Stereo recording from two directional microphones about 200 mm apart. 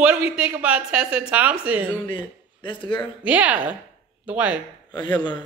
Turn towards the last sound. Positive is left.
turn(degrees=20)  # may be behind; listen again after turning